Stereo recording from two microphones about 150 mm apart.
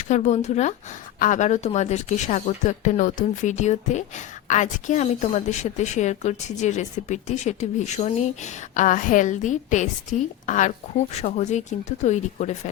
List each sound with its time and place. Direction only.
0.0 s speech: 50° left (ahead or behind)